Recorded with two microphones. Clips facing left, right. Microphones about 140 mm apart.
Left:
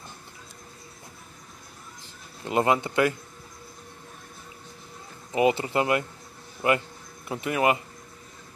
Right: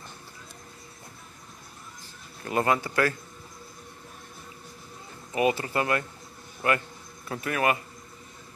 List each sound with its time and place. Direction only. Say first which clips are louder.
2.4 s speech: left 2 dB; 20° left (ahead or behind)
5.3 s speech: left 3 dB; 25° left (ahead or behind)